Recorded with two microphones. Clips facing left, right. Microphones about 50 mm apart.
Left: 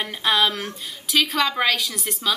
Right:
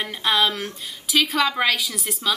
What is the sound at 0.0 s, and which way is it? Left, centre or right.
A woman's voice, centre.